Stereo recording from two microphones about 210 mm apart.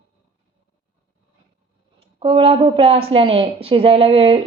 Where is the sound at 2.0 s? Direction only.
25° right (ahead or behind).